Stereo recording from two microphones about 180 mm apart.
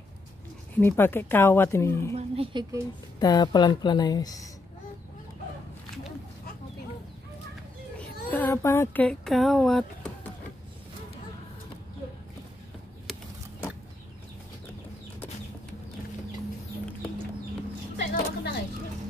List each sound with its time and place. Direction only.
0.7 s speech: 10° left (ahead or behind)
2.1 s speech: 30° right (ahead or behind)
3.2 s speech: 20° left (ahead or behind)
8.3 s speech: 10° left (ahead or behind)
18.1 s a sound: 60° left (ahead or behind)